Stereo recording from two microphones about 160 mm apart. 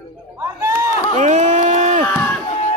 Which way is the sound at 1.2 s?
50° right (ahead or behind).